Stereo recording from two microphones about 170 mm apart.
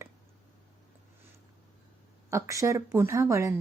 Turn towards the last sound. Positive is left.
turn(degrees=-15)  # may be behind; listen again after turning